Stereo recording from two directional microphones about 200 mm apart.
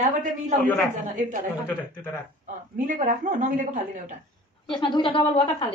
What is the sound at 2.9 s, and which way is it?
Speech, 40° right (ahead or behind).